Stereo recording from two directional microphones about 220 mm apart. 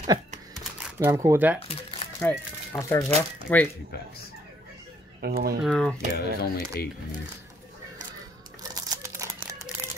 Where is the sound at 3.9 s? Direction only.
45° left (ahead or behind).